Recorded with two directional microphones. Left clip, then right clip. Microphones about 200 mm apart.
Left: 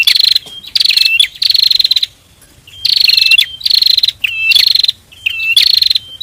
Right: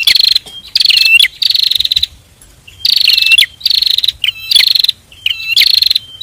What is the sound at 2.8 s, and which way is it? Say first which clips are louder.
Bird vocalization: even; 10° left (ahead or behind).